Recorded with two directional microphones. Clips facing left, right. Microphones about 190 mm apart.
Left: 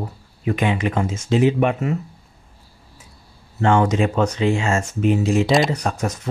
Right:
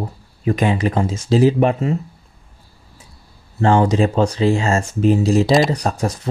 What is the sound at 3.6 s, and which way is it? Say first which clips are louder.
Speech: right 2 dB; 35° right (ahead or behind).